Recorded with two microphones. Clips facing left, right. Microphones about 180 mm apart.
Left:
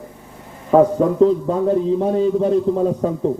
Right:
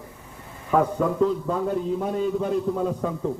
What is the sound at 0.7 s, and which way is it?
A man's voice, 35° left (ahead or behind).